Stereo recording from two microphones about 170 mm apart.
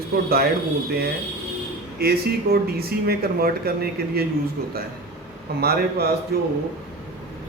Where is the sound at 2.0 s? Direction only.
65° right (ahead or behind).